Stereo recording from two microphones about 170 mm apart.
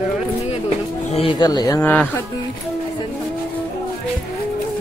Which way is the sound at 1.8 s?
10° left (ahead or behind).